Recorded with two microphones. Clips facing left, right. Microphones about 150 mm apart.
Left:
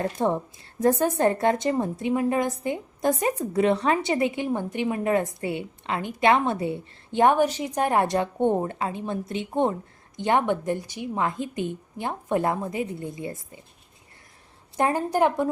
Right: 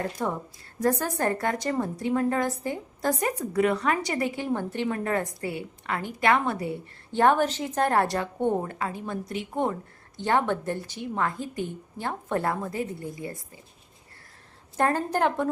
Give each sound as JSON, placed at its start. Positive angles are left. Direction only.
{"t": 0.0, "sound": "a woman's voice", "side_deg": 25}
{"t": 14.8, "sound": "a woman's voice", "side_deg": 10}